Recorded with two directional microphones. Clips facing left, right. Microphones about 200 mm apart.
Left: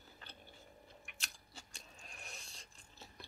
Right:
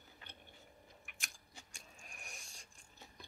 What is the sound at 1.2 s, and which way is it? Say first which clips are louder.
Chewing: left 1 dB; 15° right (ahead or behind).